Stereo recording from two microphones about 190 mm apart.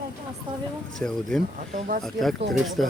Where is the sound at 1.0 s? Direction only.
5° left (ahead or behind).